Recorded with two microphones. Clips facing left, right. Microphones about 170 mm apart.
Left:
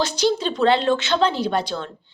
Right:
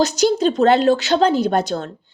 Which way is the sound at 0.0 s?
45° right (ahead or behind).